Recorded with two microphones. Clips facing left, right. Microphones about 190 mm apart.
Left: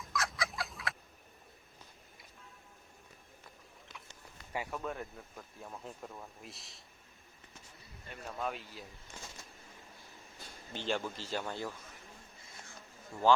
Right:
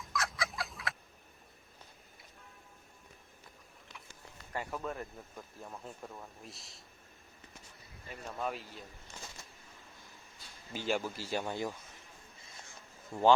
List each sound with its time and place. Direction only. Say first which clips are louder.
0.0 s fowl: even; centre (ahead or behind)
4.5 s speech: even; centre (ahead or behind)
8.1 s speech: right 1 dB; centre (ahead or behind)
10.7 s speech: right 2 dB; 5° right (ahead or behind)
13.1 s speech: right 4 dB; 20° right (ahead or behind)